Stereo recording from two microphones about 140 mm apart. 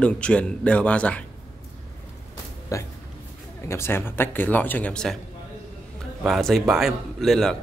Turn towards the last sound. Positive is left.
turn(degrees=0)  # may be behind; listen again after turning